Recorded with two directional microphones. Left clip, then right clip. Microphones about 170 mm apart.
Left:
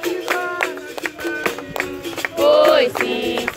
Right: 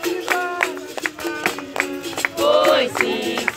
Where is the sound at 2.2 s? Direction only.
55° left (ahead or behind).